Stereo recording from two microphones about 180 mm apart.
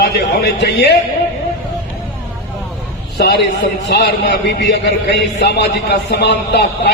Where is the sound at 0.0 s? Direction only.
70° left (ahead or behind).